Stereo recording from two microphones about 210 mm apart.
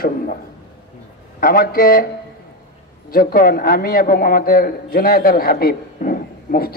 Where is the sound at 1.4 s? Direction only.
45° left (ahead or behind).